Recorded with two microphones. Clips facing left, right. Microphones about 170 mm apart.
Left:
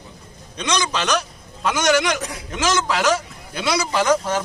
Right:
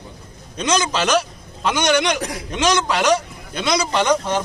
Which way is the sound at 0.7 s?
5° right (ahead or behind).